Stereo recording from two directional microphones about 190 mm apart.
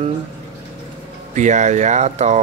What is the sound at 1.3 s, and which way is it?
Speech, 40° right (ahead or behind).